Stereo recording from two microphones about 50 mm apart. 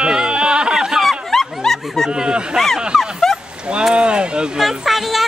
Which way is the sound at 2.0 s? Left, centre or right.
Centre.